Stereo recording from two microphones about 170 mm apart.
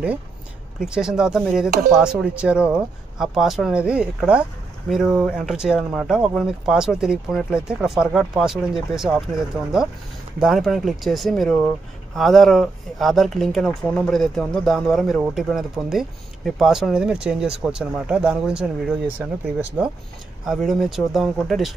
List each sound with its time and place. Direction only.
0.7 s speech: 5° right (ahead or behind)
10.4 s speech: centre (ahead or behind)